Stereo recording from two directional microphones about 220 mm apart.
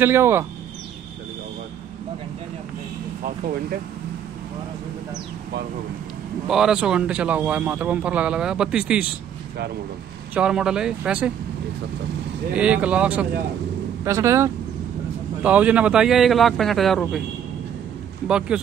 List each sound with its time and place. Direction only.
0.0 s speech: 10° right (ahead or behind)
6.4 s a man's voice: centre (ahead or behind)
10.3 s a man's voice: 5° right (ahead or behind)
12.5 s a man's voice: 5° right (ahead or behind)
18.5 s a man's voice: 5° right (ahead or behind)